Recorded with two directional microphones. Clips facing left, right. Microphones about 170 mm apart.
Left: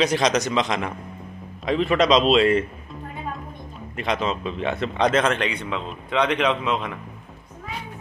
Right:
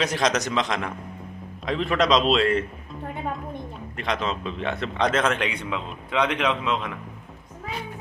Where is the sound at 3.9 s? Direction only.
5° left (ahead or behind).